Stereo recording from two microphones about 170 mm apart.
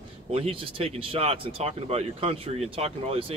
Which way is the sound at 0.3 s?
35° right (ahead or behind).